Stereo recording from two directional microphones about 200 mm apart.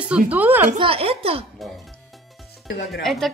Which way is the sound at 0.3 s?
10° right (ahead or behind).